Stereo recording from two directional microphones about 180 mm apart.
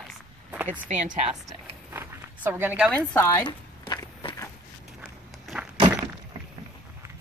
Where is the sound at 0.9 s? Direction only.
45° right (ahead or behind).